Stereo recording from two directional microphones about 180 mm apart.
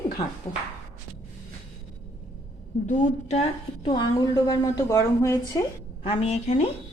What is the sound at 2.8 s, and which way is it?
Speech, 40° left (ahead or behind).